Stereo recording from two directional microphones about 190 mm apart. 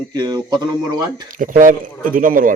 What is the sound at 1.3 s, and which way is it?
A man's voice, 45° right (ahead or behind).